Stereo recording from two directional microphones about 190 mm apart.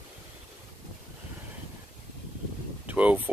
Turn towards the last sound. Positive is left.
turn(degrees=-10)  # may be behind; listen again after turning